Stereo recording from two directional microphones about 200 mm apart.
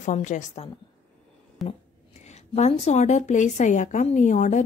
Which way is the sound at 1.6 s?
Centre (ahead or behind).